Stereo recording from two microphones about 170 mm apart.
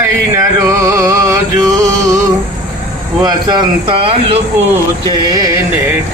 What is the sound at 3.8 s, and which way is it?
Speech, 35° right (ahead or behind).